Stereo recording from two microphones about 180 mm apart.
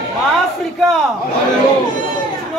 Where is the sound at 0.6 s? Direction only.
Centre (ahead or behind).